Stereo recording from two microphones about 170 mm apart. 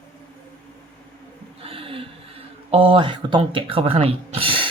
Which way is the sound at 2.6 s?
35° right (ahead or behind).